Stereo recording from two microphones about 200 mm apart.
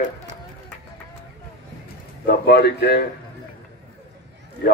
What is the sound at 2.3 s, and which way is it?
Speech, 50° left (ahead or behind).